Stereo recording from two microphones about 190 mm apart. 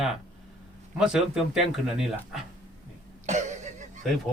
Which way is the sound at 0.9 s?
5° right (ahead or behind).